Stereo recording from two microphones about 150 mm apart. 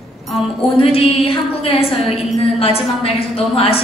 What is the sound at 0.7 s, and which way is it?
Speech, 40° left (ahead or behind).